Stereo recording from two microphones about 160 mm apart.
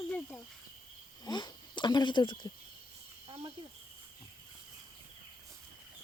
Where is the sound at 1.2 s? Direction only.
25° left (ahead or behind).